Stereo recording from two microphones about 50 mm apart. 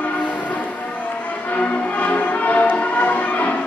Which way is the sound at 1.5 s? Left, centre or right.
Left.